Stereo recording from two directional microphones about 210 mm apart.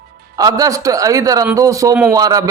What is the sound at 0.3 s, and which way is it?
A man's voice, 15° right (ahead or behind).